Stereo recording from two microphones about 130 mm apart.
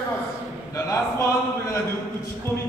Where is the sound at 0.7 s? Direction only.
25° left (ahead or behind).